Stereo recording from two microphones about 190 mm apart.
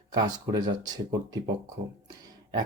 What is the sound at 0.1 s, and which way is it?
A man's voice, 20° right (ahead or behind).